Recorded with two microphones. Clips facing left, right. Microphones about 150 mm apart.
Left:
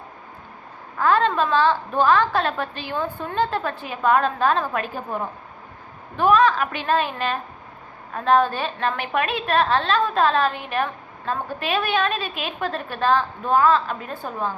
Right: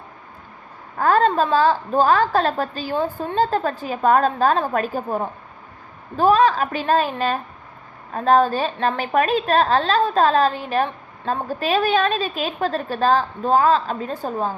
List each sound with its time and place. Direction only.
0.9 s a woman's voice: 40° right (ahead or behind)